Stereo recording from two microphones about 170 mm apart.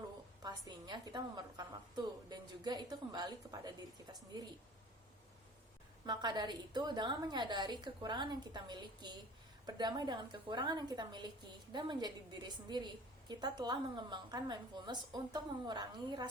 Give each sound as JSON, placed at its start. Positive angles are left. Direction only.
{"t": 0.4, "sound": "a woman's voice", "side_deg": -25}
{"t": 6.1, "sound": "a woman's voice", "side_deg": -25}